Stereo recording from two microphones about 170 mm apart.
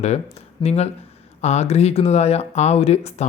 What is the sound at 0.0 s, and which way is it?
Speech, 40° left (ahead or behind).